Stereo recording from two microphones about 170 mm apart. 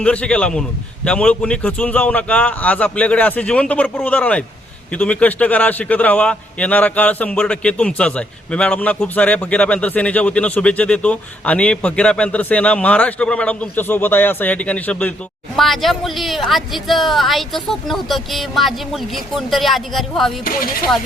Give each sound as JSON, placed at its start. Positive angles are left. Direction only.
{"t": 0.0, "sound": "a man's voice", "side_deg": 5}
{"t": 20.4, "sound": "speech", "side_deg": 60}